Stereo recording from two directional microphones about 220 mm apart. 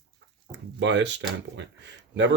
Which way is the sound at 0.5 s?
55° right (ahead or behind).